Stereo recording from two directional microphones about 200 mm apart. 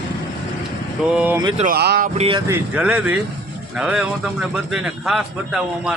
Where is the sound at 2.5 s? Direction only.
5° right (ahead or behind).